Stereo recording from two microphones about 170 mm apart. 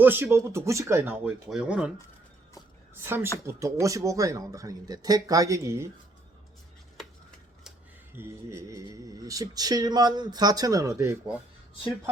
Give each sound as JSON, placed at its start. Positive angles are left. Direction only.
{"t": 0.0, "sound": "speech", "side_deg": -10}
{"t": 3.0, "sound": "speech", "side_deg": -15}
{"t": 6.9, "sound": "a sound", "side_deg": 0}
{"t": 8.1, "sound": "speech", "side_deg": -15}